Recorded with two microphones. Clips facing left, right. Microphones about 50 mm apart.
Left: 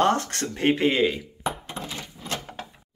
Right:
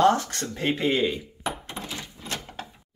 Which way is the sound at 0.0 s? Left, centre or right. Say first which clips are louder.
Right 1 dB; left.